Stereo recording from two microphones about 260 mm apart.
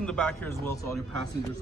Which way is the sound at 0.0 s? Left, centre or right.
Centre.